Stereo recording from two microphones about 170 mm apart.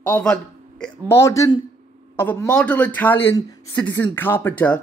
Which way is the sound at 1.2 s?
20° left (ahead or behind).